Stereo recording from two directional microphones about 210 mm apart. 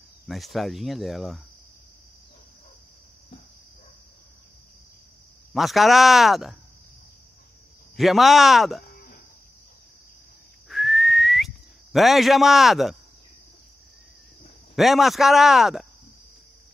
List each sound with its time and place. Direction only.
0.3 s speech: centre (ahead or behind)
5.5 s speech: centre (ahead or behind)
7.9 s speech: centre (ahead or behind)
8.9 s a sound: 45° left (ahead or behind)
10.7 s whistling: centre (ahead or behind)
14.8 s speech: centre (ahead or behind)